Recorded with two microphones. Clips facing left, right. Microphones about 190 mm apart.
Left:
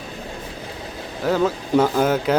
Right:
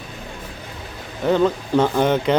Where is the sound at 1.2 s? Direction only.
5° left (ahead or behind).